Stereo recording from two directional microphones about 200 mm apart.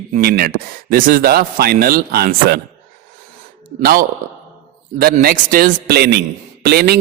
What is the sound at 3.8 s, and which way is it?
Speech, 45° right (ahead or behind).